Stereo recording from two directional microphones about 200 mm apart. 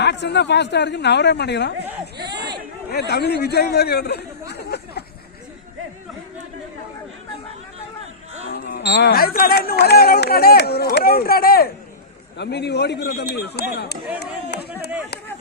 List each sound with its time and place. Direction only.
0.0 s a man's voice: 60° left (ahead or behind)
2.9 s speech: 55° left (ahead or behind)
8.6 s a man's voice: 50° left (ahead or behind)
14.2 s run: 55° left (ahead or behind)